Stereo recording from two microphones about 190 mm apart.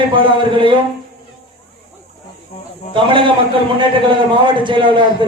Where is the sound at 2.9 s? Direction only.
25° right (ahead or behind).